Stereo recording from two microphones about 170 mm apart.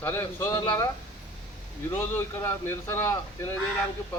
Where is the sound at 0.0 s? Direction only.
15° left (ahead or behind).